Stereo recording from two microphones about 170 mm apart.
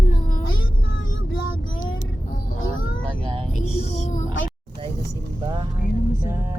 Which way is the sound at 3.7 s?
50° left (ahead or behind).